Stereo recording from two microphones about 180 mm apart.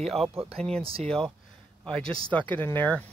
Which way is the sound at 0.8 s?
30° right (ahead or behind).